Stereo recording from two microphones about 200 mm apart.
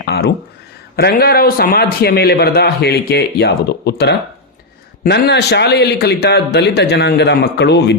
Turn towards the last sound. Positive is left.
turn(degrees=60)  # may be behind; listen again after turning